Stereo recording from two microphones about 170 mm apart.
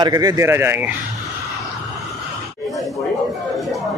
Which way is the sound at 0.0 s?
25° right (ahead or behind).